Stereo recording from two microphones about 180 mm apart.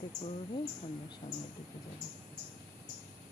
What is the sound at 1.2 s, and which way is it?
Speech, 40° left (ahead or behind).